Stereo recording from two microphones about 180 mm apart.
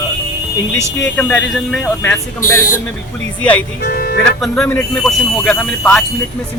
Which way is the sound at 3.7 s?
60° left (ahead or behind).